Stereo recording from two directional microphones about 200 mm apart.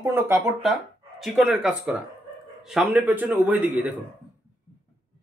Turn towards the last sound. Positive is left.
turn(degrees=-10)  # may be behind; listen again after turning